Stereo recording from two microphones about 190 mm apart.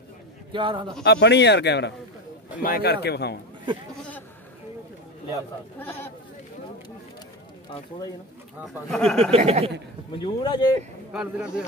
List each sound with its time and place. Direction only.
0.5 s a man's voice: 25° right (ahead or behind)
1.0 s speech: 65° left (ahead or behind)
2.6 s speech: 50° left (ahead or behind)
8.9 s speech: 5° left (ahead or behind)
9.3 s speech: 35° right (ahead or behind)
10.2 s speech: 25° left (ahead or behind)
11.1 s speech: 5° right (ahead or behind)